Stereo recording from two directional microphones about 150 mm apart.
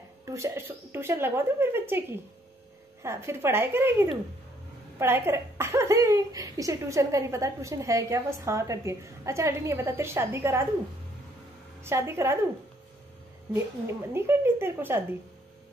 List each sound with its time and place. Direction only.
0.2 s a woman's voice: 20° right (ahead or behind)
11.8 s a woman's voice: 15° right (ahead or behind)
13.5 s a woman's voice: 15° right (ahead or behind)